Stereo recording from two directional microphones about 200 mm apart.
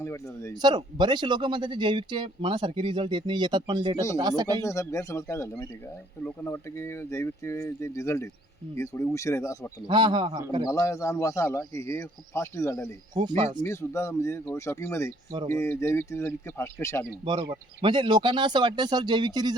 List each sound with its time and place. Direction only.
0.0 s a man's voice: 15° left (ahead or behind)
0.6 s speech: 20° right (ahead or behind)
4.6 s a man's voice: 15° left (ahead or behind)
9.8 s speech: 25° right (ahead or behind)
10.7 s a man's voice: 15° left (ahead or behind)
13.1 s speech: 20° right (ahead or behind)
13.6 s a man's voice: 15° left (ahead or behind)
17.1 s speech: 20° right (ahead or behind)